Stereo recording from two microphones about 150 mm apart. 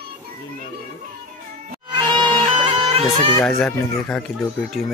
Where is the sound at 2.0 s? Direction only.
30° right (ahead or behind).